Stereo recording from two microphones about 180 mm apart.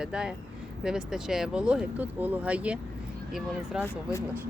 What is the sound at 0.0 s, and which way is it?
Speech, 5° right (ahead or behind).